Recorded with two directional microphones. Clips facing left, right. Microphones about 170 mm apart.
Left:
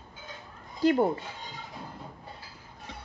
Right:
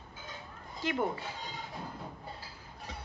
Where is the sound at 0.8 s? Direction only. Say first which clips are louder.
Left 9 dB; 40° left (ahead or behind).